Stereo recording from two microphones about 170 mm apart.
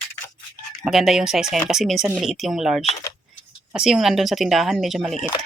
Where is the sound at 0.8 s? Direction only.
Centre (ahead or behind).